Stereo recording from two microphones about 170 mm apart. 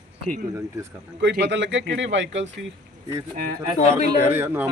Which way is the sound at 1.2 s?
90° right.